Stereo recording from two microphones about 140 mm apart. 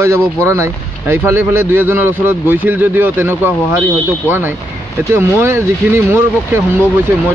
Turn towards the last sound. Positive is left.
turn(degrees=-15)  # may be behind; listen again after turning